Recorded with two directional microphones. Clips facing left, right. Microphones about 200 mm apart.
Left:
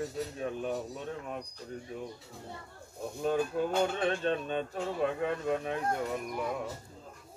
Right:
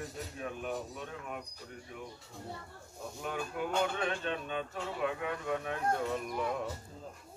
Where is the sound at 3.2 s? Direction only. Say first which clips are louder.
Left 7 dB; 30° left (ahead or behind).